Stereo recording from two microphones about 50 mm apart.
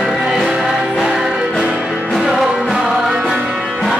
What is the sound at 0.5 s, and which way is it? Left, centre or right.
Music, centre.